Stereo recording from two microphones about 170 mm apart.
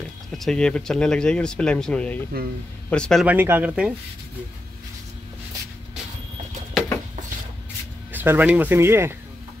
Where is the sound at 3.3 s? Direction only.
10° right (ahead or behind).